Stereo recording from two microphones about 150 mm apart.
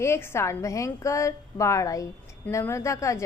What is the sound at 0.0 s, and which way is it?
A woman's voice, 15° left (ahead or behind).